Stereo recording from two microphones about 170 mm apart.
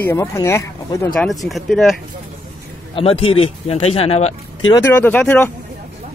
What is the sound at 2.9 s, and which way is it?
Speech, 35° left (ahead or behind).